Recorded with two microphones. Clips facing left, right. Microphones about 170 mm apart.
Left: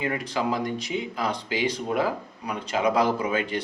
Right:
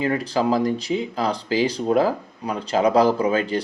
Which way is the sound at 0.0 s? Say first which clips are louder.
Right 6 dB; 35° right (ahead or behind).